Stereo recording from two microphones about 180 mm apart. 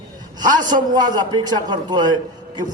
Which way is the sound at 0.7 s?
20° right (ahead or behind).